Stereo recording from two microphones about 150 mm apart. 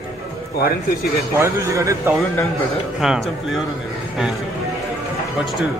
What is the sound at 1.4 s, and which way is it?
Speech, 20° right (ahead or behind).